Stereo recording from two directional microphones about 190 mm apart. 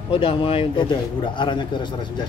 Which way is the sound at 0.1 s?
30° left (ahead or behind).